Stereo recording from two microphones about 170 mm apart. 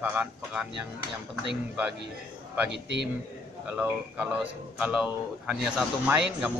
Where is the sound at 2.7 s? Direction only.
90° right.